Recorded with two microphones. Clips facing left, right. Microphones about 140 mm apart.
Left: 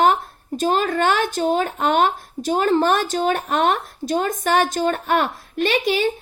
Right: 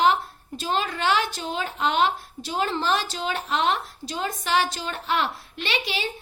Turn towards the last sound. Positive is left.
turn(degrees=50)  # may be behind; listen again after turning